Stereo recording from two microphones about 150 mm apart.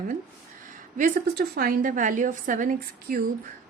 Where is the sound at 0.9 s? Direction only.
75° right (ahead or behind).